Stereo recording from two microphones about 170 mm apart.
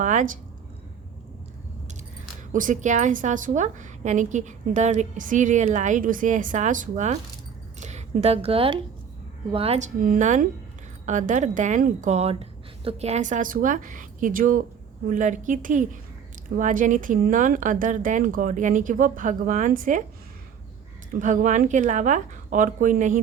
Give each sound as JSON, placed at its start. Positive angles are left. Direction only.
{"t": 0.0, "sound": "speech", "side_deg": -45}
{"t": 2.5, "sound": "a woman's voice", "side_deg": -50}
{"t": 21.2, "sound": "a woman's voice", "side_deg": -45}